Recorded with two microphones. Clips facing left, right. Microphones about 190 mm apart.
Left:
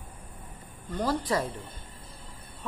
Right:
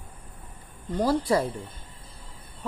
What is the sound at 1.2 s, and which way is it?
Speech, 25° right (ahead or behind).